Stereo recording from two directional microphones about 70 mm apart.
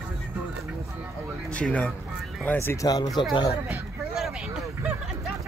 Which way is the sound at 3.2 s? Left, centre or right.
Left.